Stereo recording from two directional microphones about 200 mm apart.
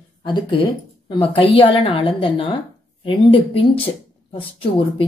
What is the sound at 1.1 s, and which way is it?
A woman's voice, 25° left (ahead or behind).